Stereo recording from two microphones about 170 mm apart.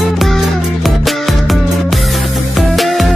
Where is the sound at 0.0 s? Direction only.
Centre (ahead or behind).